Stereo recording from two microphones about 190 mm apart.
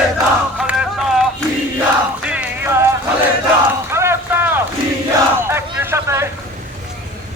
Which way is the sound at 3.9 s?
15° right (ahead or behind).